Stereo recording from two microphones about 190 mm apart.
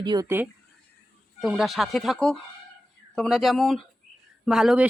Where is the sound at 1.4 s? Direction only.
Centre (ahead or behind).